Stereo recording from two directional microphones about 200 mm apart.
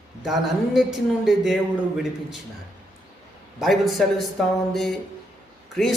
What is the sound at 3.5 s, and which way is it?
Speech, centre (ahead or behind).